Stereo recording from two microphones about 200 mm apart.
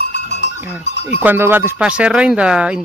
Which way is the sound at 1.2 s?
10° right (ahead or behind).